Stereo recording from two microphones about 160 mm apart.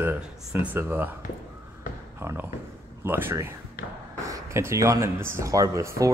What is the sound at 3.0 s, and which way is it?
Speech, 15° right (ahead or behind).